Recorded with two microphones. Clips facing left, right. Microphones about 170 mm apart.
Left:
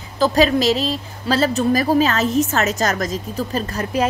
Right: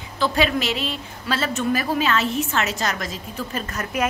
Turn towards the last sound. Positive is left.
turn(degrees=30)  # may be behind; listen again after turning